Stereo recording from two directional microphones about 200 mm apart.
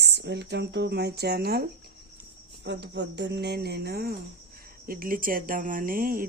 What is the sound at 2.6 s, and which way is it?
Speech, 60° right (ahead or behind).